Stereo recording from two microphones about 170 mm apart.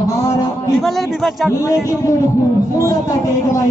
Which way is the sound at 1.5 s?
15° left (ahead or behind).